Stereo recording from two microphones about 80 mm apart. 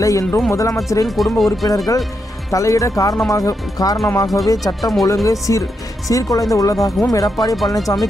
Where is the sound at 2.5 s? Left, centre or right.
Left.